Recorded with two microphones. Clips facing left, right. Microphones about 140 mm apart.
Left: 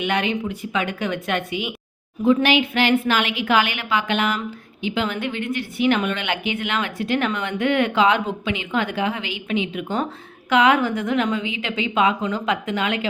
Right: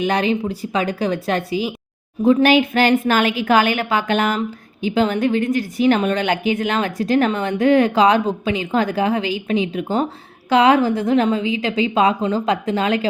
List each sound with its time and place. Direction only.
0.0 s a woman's voice: 35° right (ahead or behind)